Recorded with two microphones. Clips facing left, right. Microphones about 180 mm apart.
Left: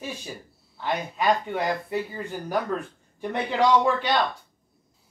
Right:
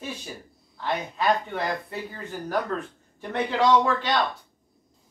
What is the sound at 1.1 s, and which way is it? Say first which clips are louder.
Speech: left 1 dB; 15° left (ahead or behind).